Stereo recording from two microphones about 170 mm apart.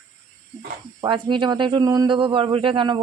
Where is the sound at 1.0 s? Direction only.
30° right (ahead or behind).